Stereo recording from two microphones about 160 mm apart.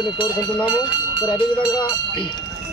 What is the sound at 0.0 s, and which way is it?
Speech, 30° left (ahead or behind).